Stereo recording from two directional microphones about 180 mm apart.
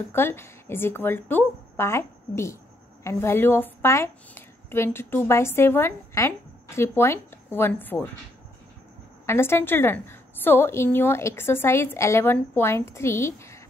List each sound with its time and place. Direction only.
0.1 s a woman's voice: 15° left (ahead or behind)
9.2 s a woman's voice: 15° left (ahead or behind)